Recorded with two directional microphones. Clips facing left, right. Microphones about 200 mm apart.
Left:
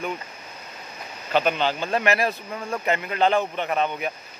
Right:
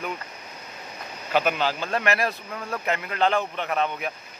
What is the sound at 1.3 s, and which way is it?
Speech, 5° right (ahead or behind).